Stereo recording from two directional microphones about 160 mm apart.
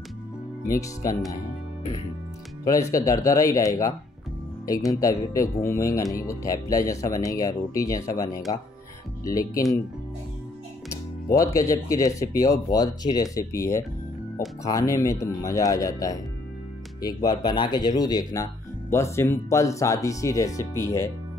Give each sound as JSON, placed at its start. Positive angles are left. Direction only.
{"t": 0.7, "sound": "speech", "side_deg": 20}
{"t": 2.6, "sound": "speech", "side_deg": 20}
{"t": 5.0, "sound": "a man's voice", "side_deg": 20}
{"t": 11.3, "sound": "speech", "side_deg": 20}